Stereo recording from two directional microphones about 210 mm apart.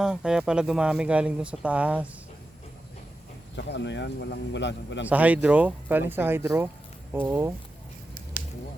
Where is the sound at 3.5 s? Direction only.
55° left (ahead or behind).